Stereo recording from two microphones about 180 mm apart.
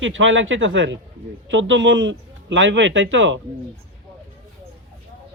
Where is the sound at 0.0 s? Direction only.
90° right.